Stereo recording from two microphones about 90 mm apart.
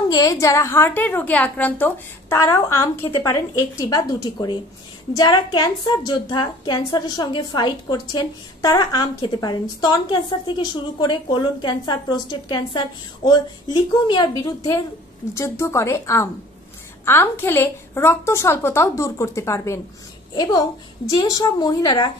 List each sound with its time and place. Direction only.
0.1 s a woman's voice: 40° left (ahead or behind); by 2.3 s 20° left (ahead or behind)
2.3 s a woman's voice: 35° left (ahead or behind)
15.3 s a woman's voice: 30° left (ahead or behind)
21.1 s a woman's voice: 45° left (ahead or behind)